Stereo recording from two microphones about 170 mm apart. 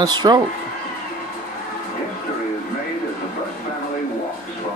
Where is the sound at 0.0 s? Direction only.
25° right (ahead or behind).